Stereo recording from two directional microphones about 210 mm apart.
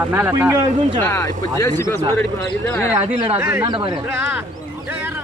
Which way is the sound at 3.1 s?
25° right (ahead or behind).